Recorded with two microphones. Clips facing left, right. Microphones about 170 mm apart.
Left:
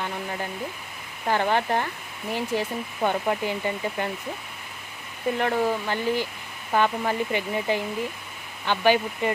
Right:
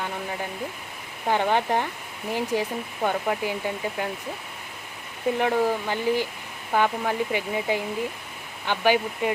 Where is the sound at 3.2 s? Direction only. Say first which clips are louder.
Left 1 dB; centre (ahead or behind).